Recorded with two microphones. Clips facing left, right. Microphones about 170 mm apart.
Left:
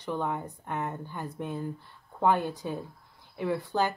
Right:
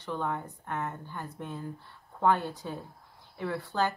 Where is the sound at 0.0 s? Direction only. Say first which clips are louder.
Left 2 dB; 15° left (ahead or behind).